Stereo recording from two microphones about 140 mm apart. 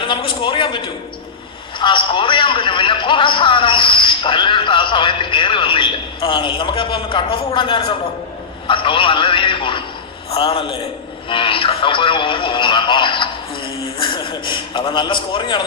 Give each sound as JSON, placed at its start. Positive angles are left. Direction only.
{"t": 0.0, "sound": "a man's voice", "side_deg": 40}
{"t": 1.8, "sound": "a man's voice", "side_deg": 35}